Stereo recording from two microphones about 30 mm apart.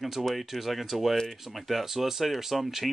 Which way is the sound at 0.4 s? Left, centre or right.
Centre.